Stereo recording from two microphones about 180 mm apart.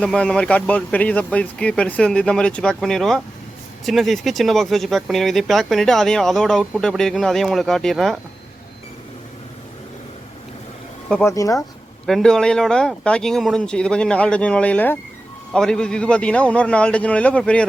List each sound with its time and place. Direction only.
0.0 s speech: 5° left (ahead or behind)
11.1 s a man's voice: 15° left (ahead or behind)
12.0 s a man's voice: centre (ahead or behind)